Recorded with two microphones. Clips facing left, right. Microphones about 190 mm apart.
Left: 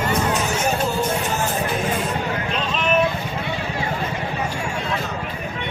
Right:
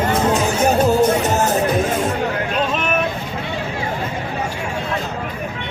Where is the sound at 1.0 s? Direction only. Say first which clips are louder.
Right 7 dB; 40° right (ahead or behind).